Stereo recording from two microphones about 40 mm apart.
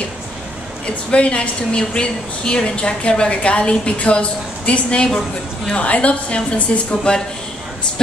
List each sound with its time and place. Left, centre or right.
1.1 s a woman's voice: left